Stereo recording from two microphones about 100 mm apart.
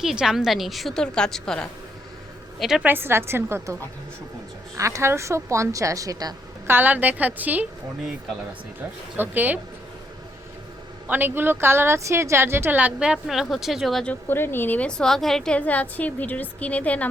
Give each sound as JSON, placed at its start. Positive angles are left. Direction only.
{"t": 0.0, "sound": "a woman's voice", "side_deg": -5}
{"t": 2.6, "sound": "a woman's voice", "side_deg": -5}
{"t": 2.8, "sound": "a woman's voice", "side_deg": -20}
{"t": 6.7, "sound": "a woman's voice", "side_deg": -20}
{"t": 9.1, "sound": "a woman's voice", "side_deg": -20}
{"t": 11.1, "sound": "a woman's voice", "side_deg": -20}
{"t": 14.0, "sound": "a woman's voice", "side_deg": 15}